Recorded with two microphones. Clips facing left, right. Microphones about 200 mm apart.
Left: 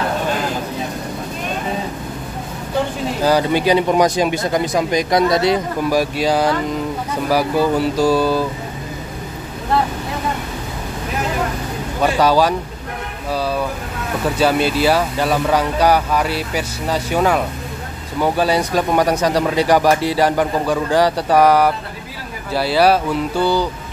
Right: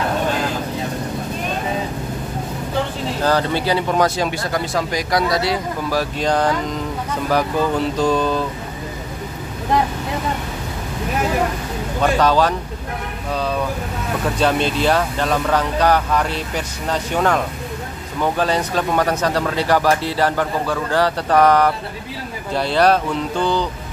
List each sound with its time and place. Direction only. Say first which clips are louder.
3.2 s speech: left 3 dB; 10° left (ahead or behind)
12.0 s speech: left 1 dB; 10° left (ahead or behind)